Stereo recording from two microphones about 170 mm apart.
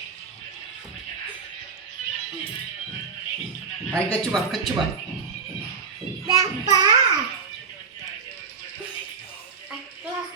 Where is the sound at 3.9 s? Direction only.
5° left (ahead or behind).